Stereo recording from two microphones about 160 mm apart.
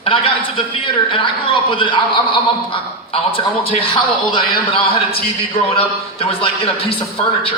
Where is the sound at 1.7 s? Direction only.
30° left (ahead or behind).